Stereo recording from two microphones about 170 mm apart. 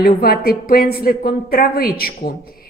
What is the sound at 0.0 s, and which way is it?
A woman's voice, 60° left (ahead or behind).